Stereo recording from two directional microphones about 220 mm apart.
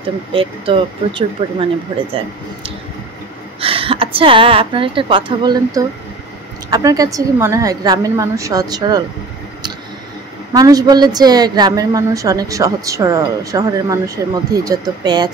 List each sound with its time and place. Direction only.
0.3 s speech: 25° right (ahead or behind)
3.6 s a woman's voice: 25° right (ahead or behind)
10.5 s a woman's voice: 15° right (ahead or behind)